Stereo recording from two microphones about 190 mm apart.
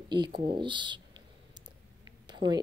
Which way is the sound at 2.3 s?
25° right (ahead or behind).